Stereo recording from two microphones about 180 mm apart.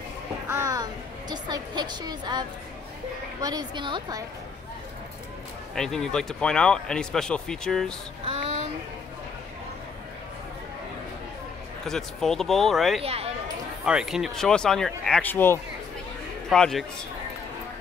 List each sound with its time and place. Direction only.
0.5 s a sound: 15° right (ahead or behind)
1.3 s a woman's voice: 25° right (ahead or behind)
5.8 s speech: 5° left (ahead or behind)
8.3 s a sound: 40° right (ahead or behind)
11.8 s speech: centre (ahead or behind)
13.0 s speech: 35° right (ahead or behind)
13.8 s a man's voice: 5° right (ahead or behind)